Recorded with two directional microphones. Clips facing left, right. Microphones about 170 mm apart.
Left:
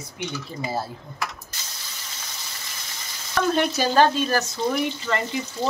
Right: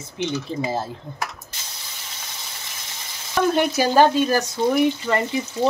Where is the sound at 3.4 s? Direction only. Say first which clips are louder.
Right 3 dB; 10° right (ahead or behind).